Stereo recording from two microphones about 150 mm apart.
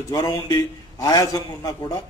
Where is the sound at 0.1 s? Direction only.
25° left (ahead or behind).